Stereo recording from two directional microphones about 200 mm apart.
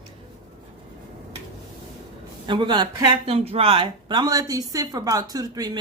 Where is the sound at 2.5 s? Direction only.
25° right (ahead or behind).